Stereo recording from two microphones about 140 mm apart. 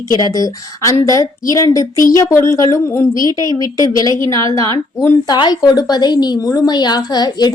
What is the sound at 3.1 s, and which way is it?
Speech, 30° right (ahead or behind).